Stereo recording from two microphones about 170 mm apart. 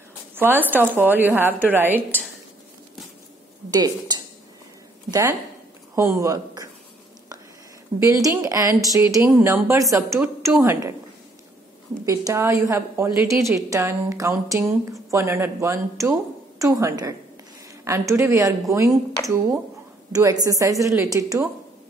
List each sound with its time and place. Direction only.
0.3 s a woman's voice: 10° right (ahead or behind)
3.7 s speech: 25° right (ahead or behind)
5.9 s speech: 20° right (ahead or behind)
8.0 s a woman's voice: 20° right (ahead or behind)
12.1 s a woman's voice: 15° right (ahead or behind)
20.1 s speech: 20° right (ahead or behind)